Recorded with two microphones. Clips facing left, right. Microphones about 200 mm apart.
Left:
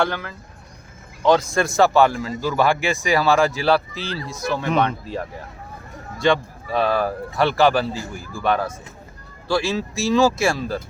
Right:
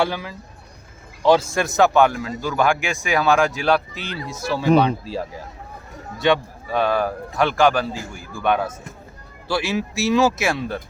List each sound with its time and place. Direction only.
0.0 s speech: 10° right (ahead or behind)
6.1 s speech: 5° right (ahead or behind)